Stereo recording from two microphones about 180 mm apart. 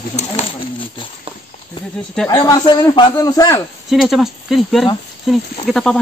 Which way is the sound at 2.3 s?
20° left (ahead or behind).